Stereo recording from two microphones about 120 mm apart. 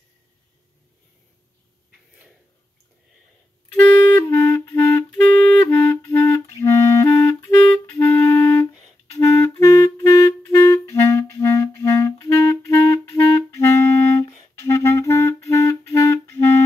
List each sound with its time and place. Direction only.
4.1 s clarinet: 20° left (ahead or behind)
5.1 s clarinet: 15° left (ahead or behind)